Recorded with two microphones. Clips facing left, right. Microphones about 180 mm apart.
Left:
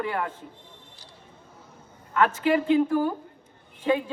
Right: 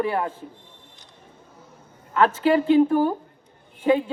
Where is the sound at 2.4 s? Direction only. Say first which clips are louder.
Right 5 dB; 35° right (ahead or behind).